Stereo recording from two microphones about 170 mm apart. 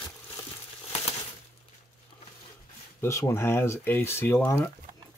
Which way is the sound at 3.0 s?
15° left (ahead or behind).